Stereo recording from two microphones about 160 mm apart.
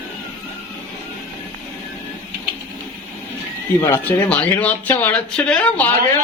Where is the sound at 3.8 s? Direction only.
15° left (ahead or behind).